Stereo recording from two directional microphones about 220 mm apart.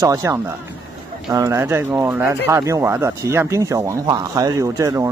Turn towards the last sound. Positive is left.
turn(degrees=-15)  # may be behind; listen again after turning